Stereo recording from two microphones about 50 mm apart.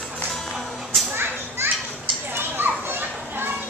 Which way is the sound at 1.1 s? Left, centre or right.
Right.